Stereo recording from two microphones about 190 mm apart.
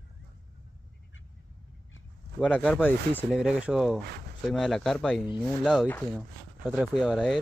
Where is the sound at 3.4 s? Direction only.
5° right (ahead or behind).